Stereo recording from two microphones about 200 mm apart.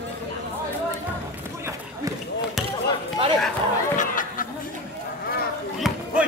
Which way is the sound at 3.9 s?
40° left (ahead or behind).